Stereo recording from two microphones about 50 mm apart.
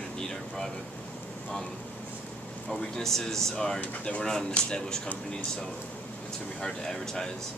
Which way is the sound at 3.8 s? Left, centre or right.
Left.